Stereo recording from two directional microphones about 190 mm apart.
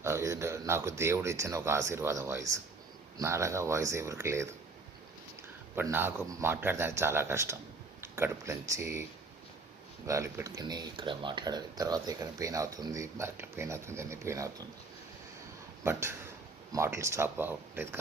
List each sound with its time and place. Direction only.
0.0 s speech: 15° right (ahead or behind)
5.9 s speech: 10° right (ahead or behind)
10.1 s speech: 15° right (ahead or behind)
15.8 s speech: 15° right (ahead or behind)